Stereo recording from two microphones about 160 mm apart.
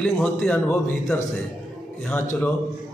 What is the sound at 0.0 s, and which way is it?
Speech, 5° left (ahead or behind).